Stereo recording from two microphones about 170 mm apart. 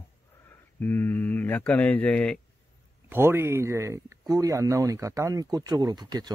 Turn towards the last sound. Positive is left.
turn(degrees=-25)  # may be behind; listen again after turning